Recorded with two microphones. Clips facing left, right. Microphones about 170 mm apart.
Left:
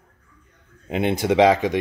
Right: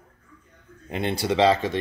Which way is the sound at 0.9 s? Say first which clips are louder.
Left 5 dB; 15° left (ahead or behind).